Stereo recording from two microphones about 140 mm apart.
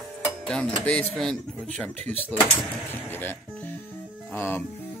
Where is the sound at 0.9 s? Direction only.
5° left (ahead or behind).